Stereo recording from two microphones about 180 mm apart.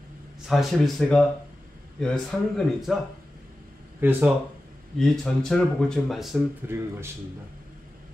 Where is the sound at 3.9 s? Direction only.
10° right (ahead or behind).